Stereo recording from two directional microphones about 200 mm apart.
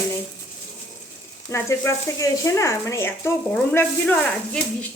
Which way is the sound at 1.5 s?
15° left (ahead or behind).